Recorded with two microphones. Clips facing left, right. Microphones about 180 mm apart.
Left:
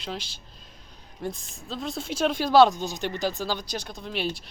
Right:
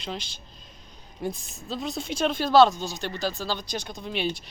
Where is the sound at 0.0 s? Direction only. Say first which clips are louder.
Even; 5° left (ahead or behind).